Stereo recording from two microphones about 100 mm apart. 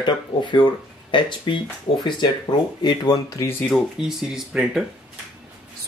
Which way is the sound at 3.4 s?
20° left (ahead or behind).